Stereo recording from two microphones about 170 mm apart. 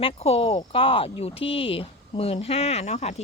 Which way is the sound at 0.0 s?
35° left (ahead or behind).